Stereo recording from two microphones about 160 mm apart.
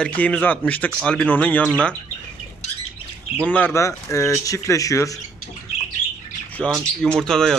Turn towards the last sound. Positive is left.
turn(degrees=5)  # may be behind; listen again after turning